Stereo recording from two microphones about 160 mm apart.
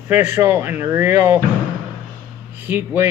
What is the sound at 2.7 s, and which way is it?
Speech, 15° right (ahead or behind).